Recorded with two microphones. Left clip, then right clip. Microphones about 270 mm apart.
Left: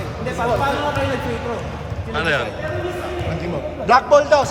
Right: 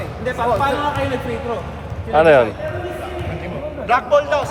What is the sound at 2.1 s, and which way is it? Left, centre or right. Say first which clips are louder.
Speech: right 9 dB; centre.